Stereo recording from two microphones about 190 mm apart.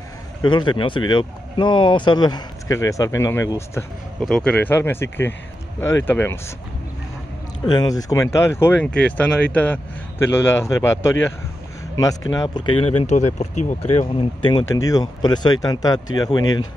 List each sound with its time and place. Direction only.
0.4 s speech: 25° left (ahead or behind)
4.2 s speech: 5° left (ahead or behind)
7.6 s speech: 20° left (ahead or behind)
13.0 s speech: 35° left (ahead or behind); by 16.6 s 20° left (ahead or behind)